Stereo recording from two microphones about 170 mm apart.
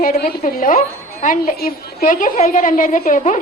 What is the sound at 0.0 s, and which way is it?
A woman's voice, 60° left (ahead or behind).